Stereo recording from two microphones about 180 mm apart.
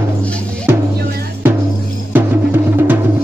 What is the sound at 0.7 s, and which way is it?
Music, 15° right (ahead or behind).